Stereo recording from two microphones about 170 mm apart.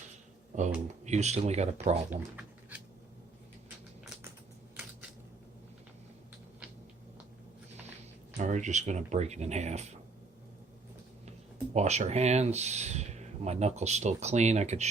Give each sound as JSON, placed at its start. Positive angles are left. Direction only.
{"t": 1.0, "sound": "speech", "side_deg": -40}
{"t": 2.0, "sound": "a sound", "side_deg": -10}
{"t": 8.4, "sound": "speech", "side_deg": -45}
{"t": 11.7, "sound": "speech", "side_deg": -40}